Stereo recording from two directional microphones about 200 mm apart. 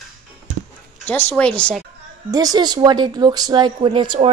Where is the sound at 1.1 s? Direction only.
10° left (ahead or behind).